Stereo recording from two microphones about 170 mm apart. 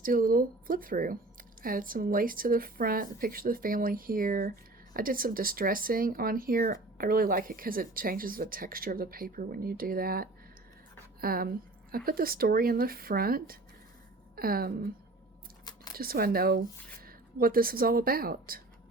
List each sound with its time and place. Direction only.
0.0 s a woman's voice: 55° right (ahead or behind)
16.0 s speech: 60° right (ahead or behind)